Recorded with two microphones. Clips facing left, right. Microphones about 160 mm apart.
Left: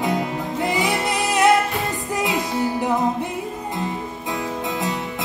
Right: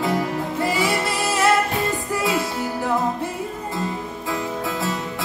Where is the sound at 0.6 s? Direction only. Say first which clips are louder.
Even; 20° left (ahead or behind).